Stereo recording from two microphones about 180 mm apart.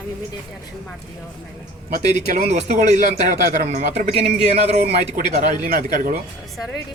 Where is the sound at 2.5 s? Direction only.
45° right (ahead or behind).